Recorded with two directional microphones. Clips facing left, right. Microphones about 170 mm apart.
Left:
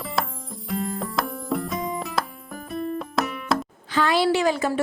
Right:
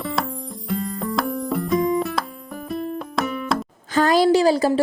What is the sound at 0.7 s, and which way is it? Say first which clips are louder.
Music: right 3 dB; centre (ahead or behind).